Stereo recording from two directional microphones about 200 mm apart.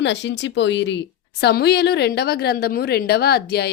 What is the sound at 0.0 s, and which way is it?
A woman's voice, 60° left (ahead or behind).